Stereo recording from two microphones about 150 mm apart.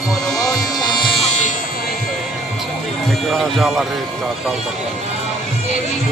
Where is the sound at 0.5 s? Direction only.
25° left (ahead or behind).